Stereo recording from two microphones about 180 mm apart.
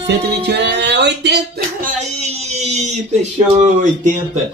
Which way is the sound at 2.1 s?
40° right (ahead or behind).